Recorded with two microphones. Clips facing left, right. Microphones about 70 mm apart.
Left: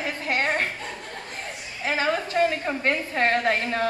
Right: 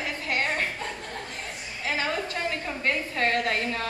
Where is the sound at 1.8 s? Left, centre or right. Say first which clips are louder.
Left 4 dB; left.